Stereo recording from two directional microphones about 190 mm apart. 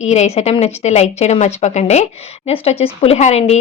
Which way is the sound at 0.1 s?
35° left (ahead or behind).